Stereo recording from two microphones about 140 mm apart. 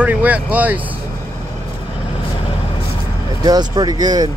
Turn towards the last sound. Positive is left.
turn(degrees=-30)  # may be behind; listen again after turning